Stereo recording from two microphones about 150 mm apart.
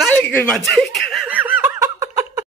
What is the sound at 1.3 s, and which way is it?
Snicker, 10° right (ahead or behind).